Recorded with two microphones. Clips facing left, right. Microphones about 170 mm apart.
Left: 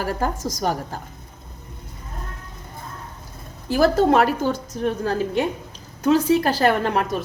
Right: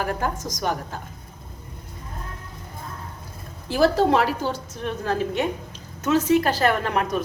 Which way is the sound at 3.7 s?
45° left (ahead or behind).